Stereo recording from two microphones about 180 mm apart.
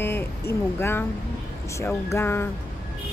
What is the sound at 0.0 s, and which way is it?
Speech, 10° left (ahead or behind).